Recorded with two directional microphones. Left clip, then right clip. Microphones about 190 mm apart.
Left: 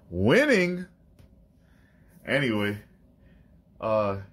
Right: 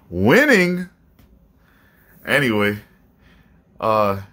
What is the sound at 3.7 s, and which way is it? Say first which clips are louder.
Speech: right 8 dB; 40° right (ahead or behind).